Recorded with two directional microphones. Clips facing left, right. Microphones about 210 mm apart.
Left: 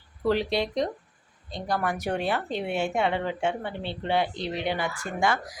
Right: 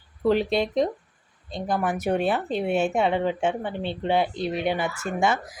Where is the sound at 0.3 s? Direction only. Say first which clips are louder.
Right 3 dB; 20° right (ahead or behind).